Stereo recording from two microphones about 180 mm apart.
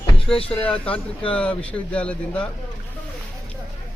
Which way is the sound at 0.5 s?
5° left (ahead or behind).